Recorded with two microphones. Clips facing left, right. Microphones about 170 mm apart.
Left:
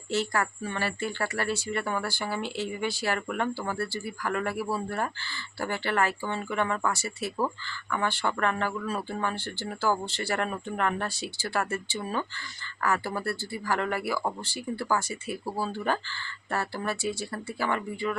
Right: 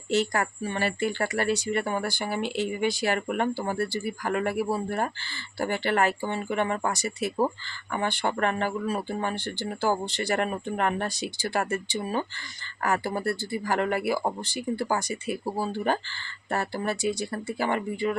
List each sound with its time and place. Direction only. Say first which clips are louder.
0.1 s speech: right 3 dB; 20° right (ahead or behind)